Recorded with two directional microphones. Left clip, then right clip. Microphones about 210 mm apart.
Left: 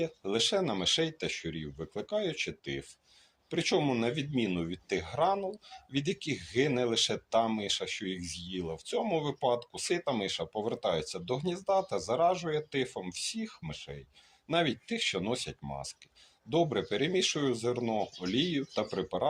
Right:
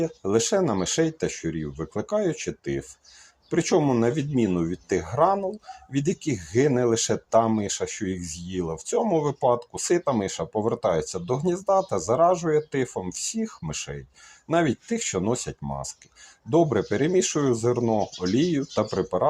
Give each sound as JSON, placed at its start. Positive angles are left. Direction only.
{"t": 0.3, "sound": "speech", "side_deg": -50}
{"t": 1.7, "sound": "speech", "side_deg": -35}
{"t": 2.0, "sound": "speech", "side_deg": -55}
{"t": 7.3, "sound": "speech", "side_deg": -35}
{"t": 7.6, "sound": "speech", "side_deg": -55}